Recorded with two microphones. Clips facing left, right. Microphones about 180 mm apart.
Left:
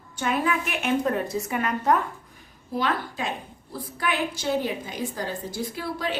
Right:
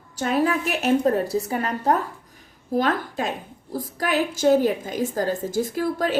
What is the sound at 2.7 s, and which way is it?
A woman's voice, 45° right (ahead or behind).